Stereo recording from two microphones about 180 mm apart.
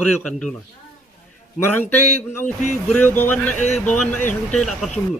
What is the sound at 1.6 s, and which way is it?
A man's voice, 10° left (ahead or behind).